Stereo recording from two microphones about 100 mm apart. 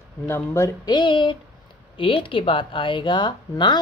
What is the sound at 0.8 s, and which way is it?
Speech, 50° left (ahead or behind).